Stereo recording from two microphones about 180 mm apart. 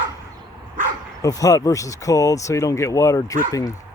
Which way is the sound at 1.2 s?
20° left (ahead or behind).